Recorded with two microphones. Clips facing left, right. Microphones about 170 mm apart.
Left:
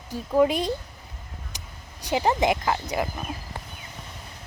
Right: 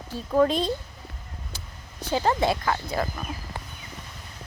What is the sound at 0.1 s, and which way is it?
Speech, 15° left (ahead or behind).